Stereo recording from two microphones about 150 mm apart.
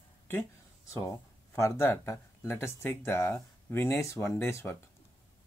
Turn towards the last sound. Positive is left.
turn(degrees=15)  # may be behind; listen again after turning